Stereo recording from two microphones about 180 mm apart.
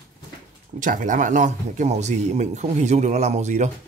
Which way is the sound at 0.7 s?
45° right (ahead or behind).